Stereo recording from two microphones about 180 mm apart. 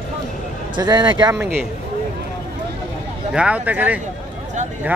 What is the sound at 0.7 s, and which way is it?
Speech, 25° right (ahead or behind).